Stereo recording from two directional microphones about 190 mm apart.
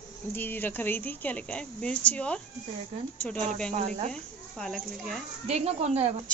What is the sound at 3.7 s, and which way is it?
Speech, 35° right (ahead or behind).